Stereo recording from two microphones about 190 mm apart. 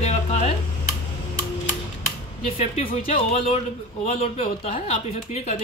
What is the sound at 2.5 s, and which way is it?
Speech, 30° left (ahead or behind).